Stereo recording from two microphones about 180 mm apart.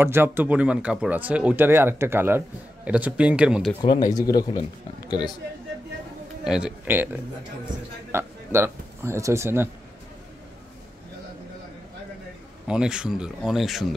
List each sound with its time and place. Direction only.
0.0 s speech: 10° right (ahead or behind)
3.8 s speech: 25° left (ahead or behind)
6.4 s a man's voice: 5° right (ahead or behind)
12.6 s speech: 5° right (ahead or behind)